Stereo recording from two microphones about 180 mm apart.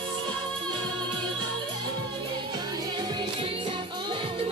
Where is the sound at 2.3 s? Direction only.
25° right (ahead or behind).